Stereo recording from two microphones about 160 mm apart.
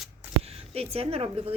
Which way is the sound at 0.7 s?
40° right (ahead or behind).